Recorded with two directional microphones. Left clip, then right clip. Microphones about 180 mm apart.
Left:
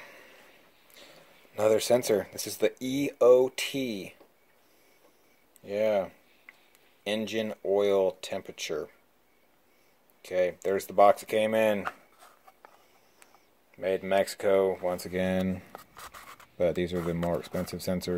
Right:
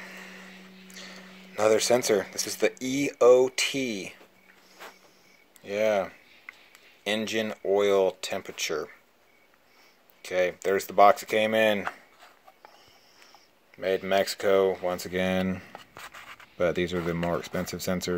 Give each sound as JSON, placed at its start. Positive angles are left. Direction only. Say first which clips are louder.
{"t": 0.9, "sound": "speech", "louder": "right 8 dB", "side_deg": -5}
{"t": 5.6, "sound": "a sound", "louder": "right 2 dB", "side_deg": 0}
{"t": 7.1, "sound": "speech", "louder": "right 3 dB", "side_deg": 0}
{"t": 10.2, "sound": "speech", "louder": "right 2 dB", "side_deg": 0}
{"t": 13.7, "sound": "speech", "louder": "right 1 dB", "side_deg": 5}
{"t": 15.7, "sound": "writing", "louder": "right 2 dB", "side_deg": 35}
{"t": 16.5, "sound": "speech", "louder": "right 1 dB", "side_deg": 5}